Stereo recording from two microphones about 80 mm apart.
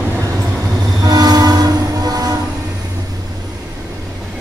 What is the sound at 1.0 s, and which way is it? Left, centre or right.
Train, right.